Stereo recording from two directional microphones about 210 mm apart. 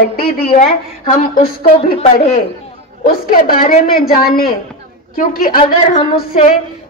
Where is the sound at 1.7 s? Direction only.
25° left (ahead or behind).